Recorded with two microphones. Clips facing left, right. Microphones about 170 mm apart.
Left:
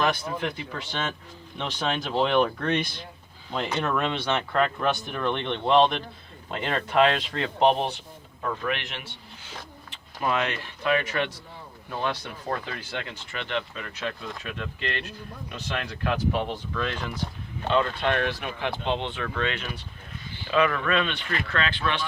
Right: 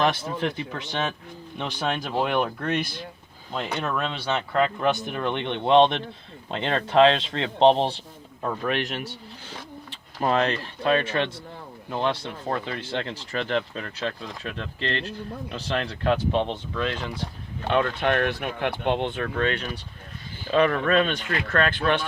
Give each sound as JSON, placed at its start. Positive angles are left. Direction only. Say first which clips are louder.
{"t": 0.0, "sound": "speech", "louder": "right 2 dB", "side_deg": -25}
{"t": 1.5, "sound": "speech", "louder": "right 1 dB", "side_deg": -10}
{"t": 17.7, "sound": "speech", "louder": "right 1 dB", "side_deg": -55}